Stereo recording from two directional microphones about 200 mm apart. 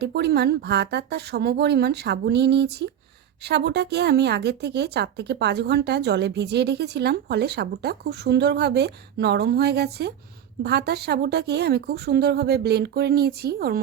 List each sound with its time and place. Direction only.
0.0 s a woman's voice: 55° right (ahead or behind)